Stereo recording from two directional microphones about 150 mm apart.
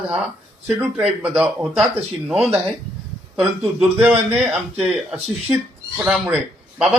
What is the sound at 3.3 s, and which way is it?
Speech, 5° right (ahead or behind).